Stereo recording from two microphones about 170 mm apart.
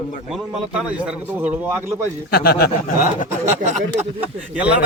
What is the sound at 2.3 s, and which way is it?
Speech, 65° left (ahead or behind).